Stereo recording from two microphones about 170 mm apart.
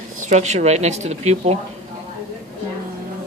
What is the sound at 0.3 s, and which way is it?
Speech, 40° right (ahead or behind).